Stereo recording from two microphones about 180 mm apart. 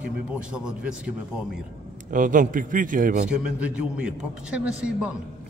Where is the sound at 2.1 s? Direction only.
45° right (ahead or behind).